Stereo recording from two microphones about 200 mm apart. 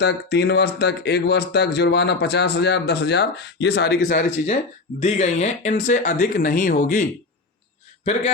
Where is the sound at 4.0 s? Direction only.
40° left (ahead or behind).